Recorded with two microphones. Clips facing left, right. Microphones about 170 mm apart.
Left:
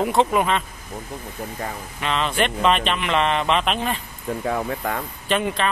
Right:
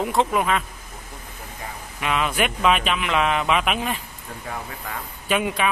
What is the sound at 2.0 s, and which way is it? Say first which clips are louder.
Speech: left 1 dB; 10° right (ahead or behind).